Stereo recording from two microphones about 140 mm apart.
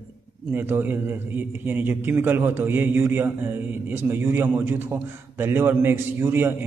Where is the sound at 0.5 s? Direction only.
15° right (ahead or behind).